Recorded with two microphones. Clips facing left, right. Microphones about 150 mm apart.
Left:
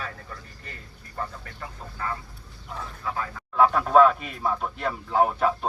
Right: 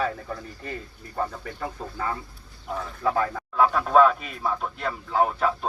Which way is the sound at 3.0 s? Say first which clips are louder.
Right 8 dB; 90° right.